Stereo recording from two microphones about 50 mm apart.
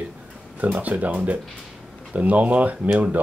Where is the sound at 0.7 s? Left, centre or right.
Right.